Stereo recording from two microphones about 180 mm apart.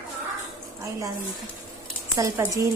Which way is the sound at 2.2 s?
20° right (ahead or behind).